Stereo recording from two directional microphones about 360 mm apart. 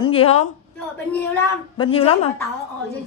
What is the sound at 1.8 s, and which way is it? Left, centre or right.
Speech, centre.